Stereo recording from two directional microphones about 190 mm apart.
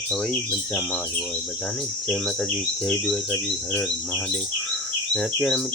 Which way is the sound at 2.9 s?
5° left (ahead or behind).